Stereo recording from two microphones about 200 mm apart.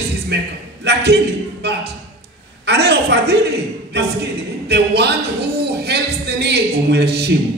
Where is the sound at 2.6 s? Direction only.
55° right (ahead or behind).